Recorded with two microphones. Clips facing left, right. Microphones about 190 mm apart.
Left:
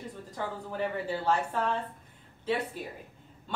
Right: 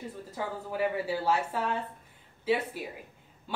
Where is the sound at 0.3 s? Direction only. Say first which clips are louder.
Right 1 dB; 5° right (ahead or behind).